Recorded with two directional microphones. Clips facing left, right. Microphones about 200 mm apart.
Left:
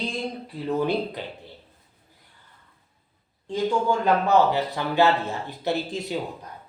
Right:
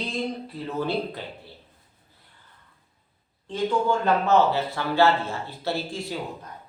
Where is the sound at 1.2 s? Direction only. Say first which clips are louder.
Left 2 dB; 20° left (ahead or behind).